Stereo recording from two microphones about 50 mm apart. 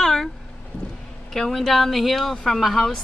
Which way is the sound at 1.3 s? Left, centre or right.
Centre.